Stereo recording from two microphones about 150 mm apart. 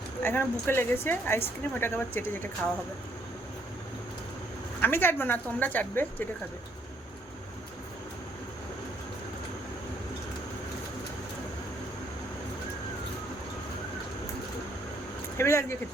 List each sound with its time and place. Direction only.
0.2 s speech: 15° left (ahead or behind)
4.8 s speech: 15° left (ahead or behind)
15.4 s speech: 20° left (ahead or behind)